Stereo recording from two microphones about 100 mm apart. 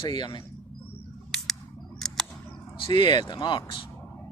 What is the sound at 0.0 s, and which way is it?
Speech, 50° left (ahead or behind).